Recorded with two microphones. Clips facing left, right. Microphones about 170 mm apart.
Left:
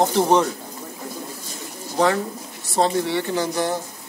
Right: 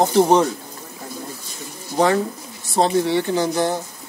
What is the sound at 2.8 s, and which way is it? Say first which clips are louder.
Speech: right 3 dB; 20° right (ahead or behind).